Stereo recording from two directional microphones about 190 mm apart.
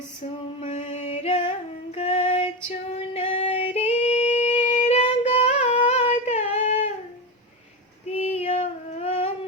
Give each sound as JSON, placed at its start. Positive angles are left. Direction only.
{"t": 0.6, "sound": "music", "side_deg": 35}
{"t": 2.0, "sound": "female singing", "side_deg": 30}
{"t": 8.1, "sound": "female singing", "side_deg": 35}